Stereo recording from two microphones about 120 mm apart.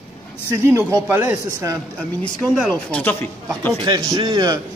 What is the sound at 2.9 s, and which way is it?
Speech, 15° left (ahead or behind).